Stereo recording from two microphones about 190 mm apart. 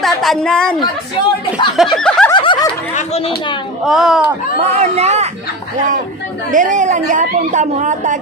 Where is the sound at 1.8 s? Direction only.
5° left (ahead or behind).